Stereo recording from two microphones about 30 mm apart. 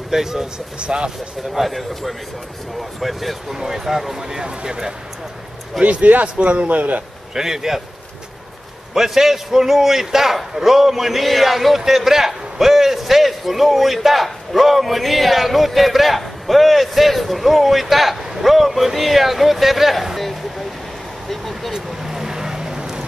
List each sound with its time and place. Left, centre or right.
0.1 s a man's voice: centre
0.7 s speech: right
1.5 s a man's voice: centre
3.5 s a man's voice: centre
4.3 s speech: right
5.9 s a man's voice: right
6.2 s a man's voice: right
7.3 s a man's voice: centre
8.9 s a man's voice: centre
21.7 s vehicle: centre